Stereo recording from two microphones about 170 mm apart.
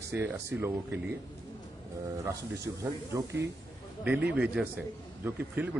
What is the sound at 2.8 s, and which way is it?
A man's voice, 15° right (ahead or behind).